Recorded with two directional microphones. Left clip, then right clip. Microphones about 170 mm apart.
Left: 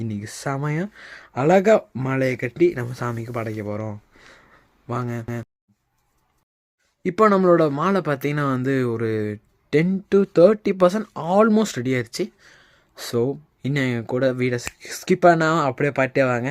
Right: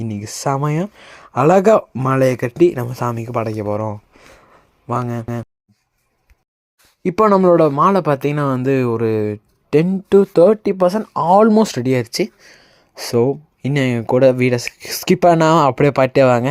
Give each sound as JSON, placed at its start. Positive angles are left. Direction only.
{"t": 0.0, "sound": "speech", "side_deg": -15}
{"t": 7.0, "sound": "speech", "side_deg": -15}